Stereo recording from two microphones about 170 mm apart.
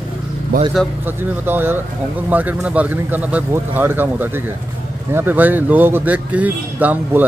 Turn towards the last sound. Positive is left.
turn(degrees=-10)  # may be behind; listen again after turning